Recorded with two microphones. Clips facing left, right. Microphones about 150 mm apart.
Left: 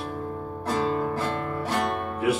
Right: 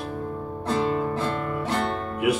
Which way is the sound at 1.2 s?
Centre (ahead or behind).